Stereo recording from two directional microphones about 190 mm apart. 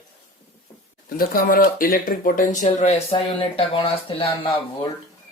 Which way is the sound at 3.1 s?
30° left (ahead or behind).